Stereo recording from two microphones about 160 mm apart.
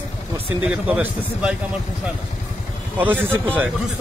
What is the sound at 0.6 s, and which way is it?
Speech, 10° right (ahead or behind).